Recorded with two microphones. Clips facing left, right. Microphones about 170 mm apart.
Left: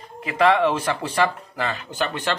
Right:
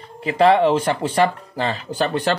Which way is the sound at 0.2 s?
30° right (ahead or behind).